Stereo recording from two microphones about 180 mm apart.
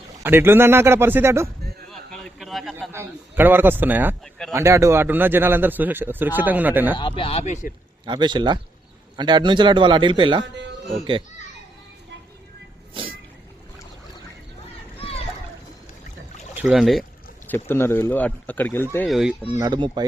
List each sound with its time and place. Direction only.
0.2 s speech: 15° right (ahead or behind)
1.9 s a sound: 5° left (ahead or behind)
2.9 s speech: 10° right (ahead or behind)
7.0 s speech: 30° left (ahead or behind)
8.0 s a man's voice: 25° right (ahead or behind)
14.9 s a sound: 35° left (ahead or behind)
16.6 s speech: 5° right (ahead or behind); by 18.9 s 10° left (ahead or behind)
19.0 s speech: centre (ahead or behind)
19.5 s a man's voice: 25° right (ahead or behind)